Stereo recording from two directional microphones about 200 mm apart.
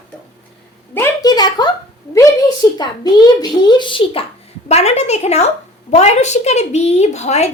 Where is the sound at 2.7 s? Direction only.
20° left (ahead or behind).